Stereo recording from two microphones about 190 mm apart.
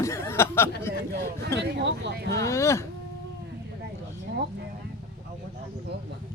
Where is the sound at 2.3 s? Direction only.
15° left (ahead or behind).